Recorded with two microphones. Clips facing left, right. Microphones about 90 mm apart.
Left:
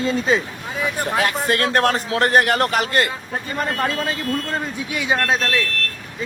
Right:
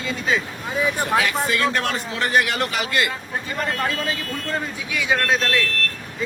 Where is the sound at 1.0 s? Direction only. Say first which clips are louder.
Left 3 dB; 50° left (ahead or behind).